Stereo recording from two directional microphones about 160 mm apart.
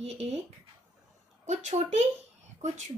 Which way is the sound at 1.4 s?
45° right (ahead or behind).